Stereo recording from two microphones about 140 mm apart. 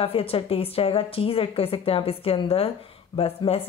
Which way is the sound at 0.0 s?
40° left (ahead or behind).